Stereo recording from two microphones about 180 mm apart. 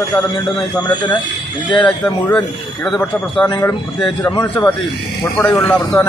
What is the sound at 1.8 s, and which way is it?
A man's voice, 5° left (ahead or behind).